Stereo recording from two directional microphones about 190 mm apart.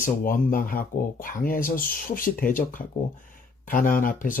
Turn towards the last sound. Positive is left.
turn(degrees=45)  # may be behind; listen again after turning